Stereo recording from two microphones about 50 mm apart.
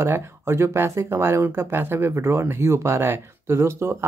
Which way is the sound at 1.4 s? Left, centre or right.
Right.